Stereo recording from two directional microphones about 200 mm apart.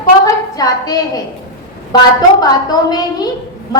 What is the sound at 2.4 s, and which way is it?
Speech, 20° left (ahead or behind).